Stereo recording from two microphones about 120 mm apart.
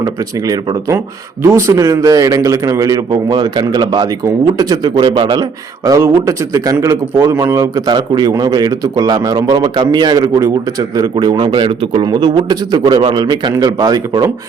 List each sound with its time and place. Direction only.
0.0 s a man's voice: 30° right (ahead or behind)
6.0 s a man's voice: 25° right (ahead or behind)